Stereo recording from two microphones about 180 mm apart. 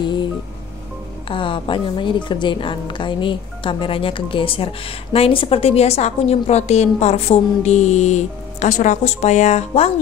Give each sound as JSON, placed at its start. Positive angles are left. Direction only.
{"t": 0.0, "sound": "music", "side_deg": 25}
{"t": 1.3, "sound": "a woman's voice", "side_deg": 30}